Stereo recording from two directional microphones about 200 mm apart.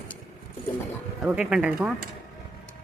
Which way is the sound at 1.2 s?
5° right (ahead or behind).